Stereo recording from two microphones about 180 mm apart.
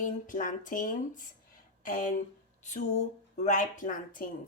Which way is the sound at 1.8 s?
50° left (ahead or behind).